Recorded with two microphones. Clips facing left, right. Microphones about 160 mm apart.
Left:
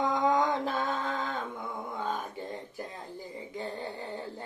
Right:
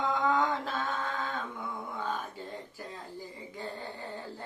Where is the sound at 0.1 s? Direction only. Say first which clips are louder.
Left 2 dB; 15° left (ahead or behind).